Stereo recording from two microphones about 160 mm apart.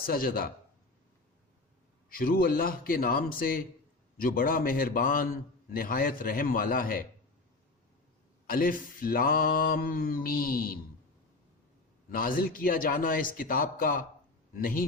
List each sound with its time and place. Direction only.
0.0 s mantra: 65° left (ahead or behind)
2.0 s mantra: 65° left (ahead or behind)
8.4 s mantra: 60° left (ahead or behind)
12.1 s mantra: 60° left (ahead or behind)